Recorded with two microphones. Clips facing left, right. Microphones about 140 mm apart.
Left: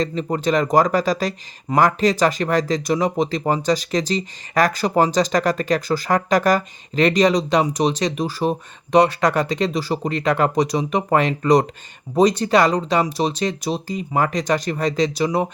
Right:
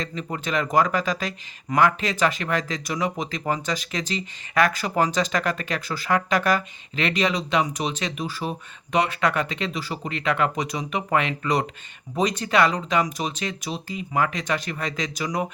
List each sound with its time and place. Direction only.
0.0 s speech: 35° left (ahead or behind)